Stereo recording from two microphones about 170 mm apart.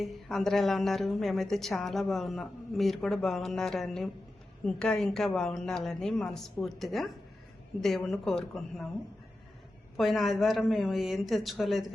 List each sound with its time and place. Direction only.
0.0 s a woman's voice: centre (ahead or behind)
10.0 s a woman's voice: centre (ahead or behind)